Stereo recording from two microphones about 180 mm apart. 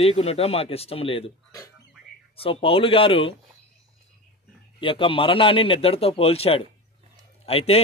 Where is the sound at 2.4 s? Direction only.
30° left (ahead or behind).